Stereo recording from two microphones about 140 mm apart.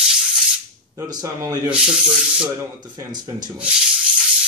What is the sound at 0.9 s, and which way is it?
Speech, 25° right (ahead or behind).